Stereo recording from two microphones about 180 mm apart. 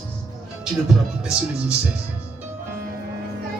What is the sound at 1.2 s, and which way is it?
Speech, 5° right (ahead or behind).